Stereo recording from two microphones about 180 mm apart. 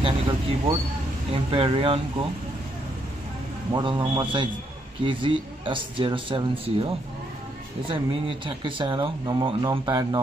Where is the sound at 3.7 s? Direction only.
30° right (ahead or behind).